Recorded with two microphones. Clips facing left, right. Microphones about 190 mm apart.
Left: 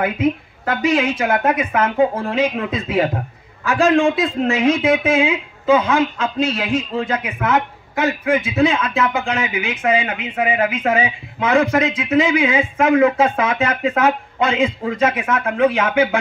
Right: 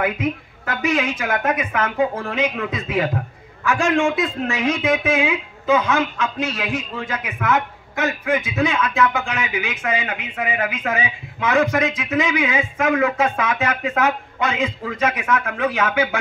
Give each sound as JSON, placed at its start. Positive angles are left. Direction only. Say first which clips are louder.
{"t": 0.0, "sound": "a woman's voice", "louder": "left 4 dB", "side_deg": 25}
{"t": 4.5, "sound": "speech", "louder": "left 6 dB", "side_deg": 25}
{"t": 8.3, "sound": "speech", "louder": "left 5 dB", "side_deg": 25}